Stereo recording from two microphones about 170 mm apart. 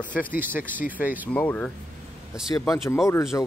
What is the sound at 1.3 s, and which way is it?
Speech, 10° left (ahead or behind).